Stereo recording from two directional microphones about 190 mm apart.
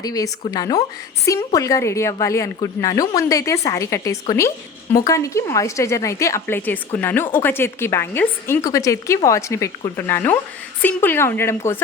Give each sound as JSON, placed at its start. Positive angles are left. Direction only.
{"t": 0.0, "sound": "a woman's voice", "side_deg": 20}